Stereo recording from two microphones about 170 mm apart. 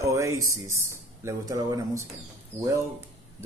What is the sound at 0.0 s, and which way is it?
Speech, 15° right (ahead or behind).